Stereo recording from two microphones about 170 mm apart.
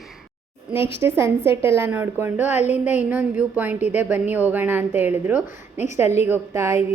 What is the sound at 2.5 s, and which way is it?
Speech, 40° left (ahead or behind).